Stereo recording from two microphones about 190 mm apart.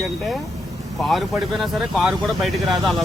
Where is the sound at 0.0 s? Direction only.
Centre (ahead or behind).